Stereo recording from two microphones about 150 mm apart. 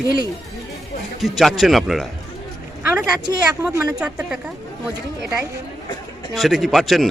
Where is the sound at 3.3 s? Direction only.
25° right (ahead or behind).